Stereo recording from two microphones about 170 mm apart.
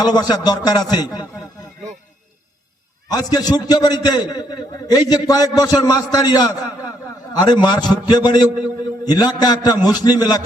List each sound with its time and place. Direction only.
0.0 s a man's voice: 25° left (ahead or behind)
3.1 s a man's voice: 25° left (ahead or behind)